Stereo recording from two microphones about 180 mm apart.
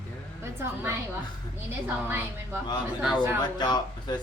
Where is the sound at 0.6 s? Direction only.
10° right (ahead or behind).